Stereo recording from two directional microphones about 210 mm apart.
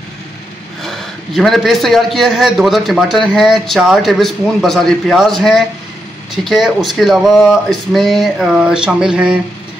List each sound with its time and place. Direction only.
0.8 s a man's voice: centre (ahead or behind)